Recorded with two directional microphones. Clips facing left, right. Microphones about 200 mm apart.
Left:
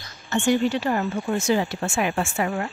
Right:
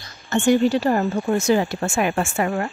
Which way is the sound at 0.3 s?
40° right (ahead or behind).